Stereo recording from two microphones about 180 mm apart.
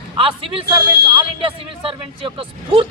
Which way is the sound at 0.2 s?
30° right (ahead or behind).